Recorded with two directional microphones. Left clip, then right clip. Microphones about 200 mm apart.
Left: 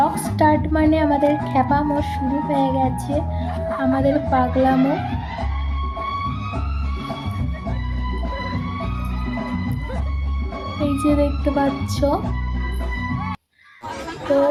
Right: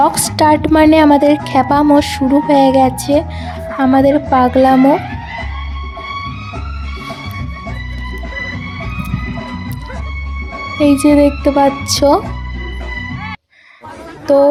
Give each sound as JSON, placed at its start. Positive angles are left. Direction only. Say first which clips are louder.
{"t": 0.0, "sound": "a woman's voice", "louder": "right 6 dB", "side_deg": -55}
{"t": 1.5, "sound": "music", "louder": "right 8 dB", "side_deg": -55}
{"t": 10.8, "sound": "music", "louder": "right 10 dB", "side_deg": -50}